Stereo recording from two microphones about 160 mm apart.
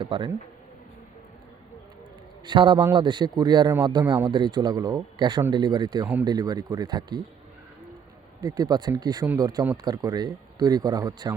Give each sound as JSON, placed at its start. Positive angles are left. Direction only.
{"t": 0.0, "sound": "speech", "side_deg": -30}
{"t": 2.5, "sound": "speech", "side_deg": -30}
{"t": 8.4, "sound": "speech", "side_deg": -25}